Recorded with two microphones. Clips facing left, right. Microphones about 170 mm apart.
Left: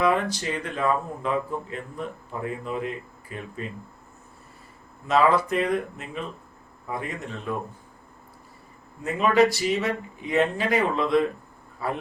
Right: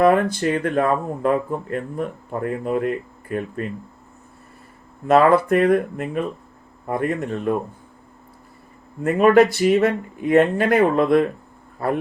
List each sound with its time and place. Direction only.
0.0 s speech: 55° right (ahead or behind)
5.0 s speech: 55° right (ahead or behind)
9.0 s speech: 55° right (ahead or behind)